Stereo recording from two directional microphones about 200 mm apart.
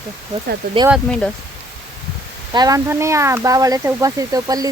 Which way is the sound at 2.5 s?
20° right (ahead or behind).